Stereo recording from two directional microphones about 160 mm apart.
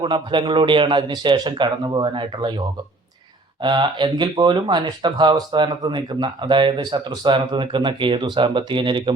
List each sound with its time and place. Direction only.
0.0 s speech: 30° right (ahead or behind)
3.6 s speech: 30° right (ahead or behind)